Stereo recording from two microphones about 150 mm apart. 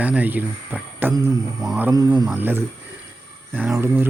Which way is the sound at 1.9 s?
25° right (ahead or behind).